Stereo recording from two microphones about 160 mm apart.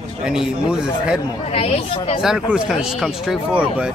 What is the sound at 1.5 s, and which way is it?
Speech, 40° left (ahead or behind).